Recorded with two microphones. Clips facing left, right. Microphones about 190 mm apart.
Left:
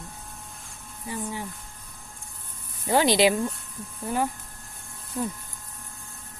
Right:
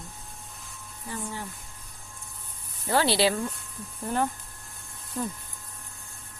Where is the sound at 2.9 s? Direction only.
15° left (ahead or behind).